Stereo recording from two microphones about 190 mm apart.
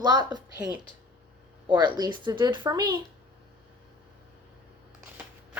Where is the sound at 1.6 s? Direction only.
25° right (ahead or behind).